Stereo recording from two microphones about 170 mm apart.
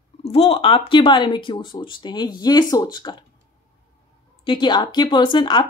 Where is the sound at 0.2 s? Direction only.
35° left (ahead or behind).